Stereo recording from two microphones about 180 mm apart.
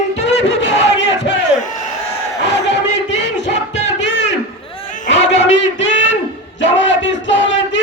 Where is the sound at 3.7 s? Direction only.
75° left (ahead or behind).